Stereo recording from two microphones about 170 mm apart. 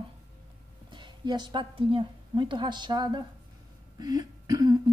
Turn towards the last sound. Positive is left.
turn(degrees=-20)  # may be behind; listen again after turning